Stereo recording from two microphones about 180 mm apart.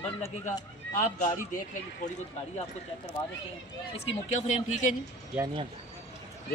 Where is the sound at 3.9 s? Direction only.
35° left (ahead or behind).